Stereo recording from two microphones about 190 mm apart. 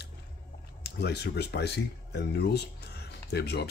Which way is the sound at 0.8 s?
60° left (ahead or behind).